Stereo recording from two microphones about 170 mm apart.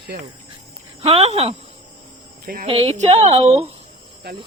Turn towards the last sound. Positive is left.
turn(degrees=-40)  # may be behind; listen again after turning